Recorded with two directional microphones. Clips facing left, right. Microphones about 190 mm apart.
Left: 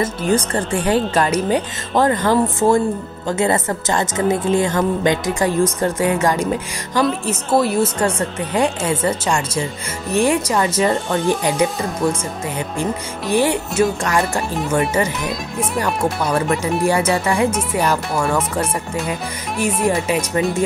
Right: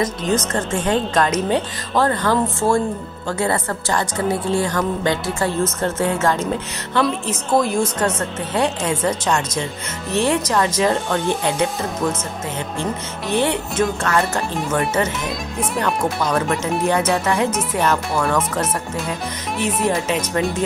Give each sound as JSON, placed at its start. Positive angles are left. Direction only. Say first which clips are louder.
{"t": 0.0, "sound": "a woman's voice", "louder": "left 2 dB", "side_deg": 10}
{"t": 14.8, "sound": "speech", "louder": "left 2 dB", "side_deg": 0}